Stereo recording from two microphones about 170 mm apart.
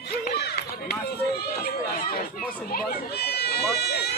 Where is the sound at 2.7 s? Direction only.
65° left (ahead or behind).